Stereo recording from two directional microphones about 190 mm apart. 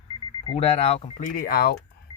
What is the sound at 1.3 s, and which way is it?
Speech, 50° left (ahead or behind).